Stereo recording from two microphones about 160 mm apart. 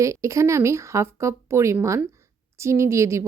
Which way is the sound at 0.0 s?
20° right (ahead or behind).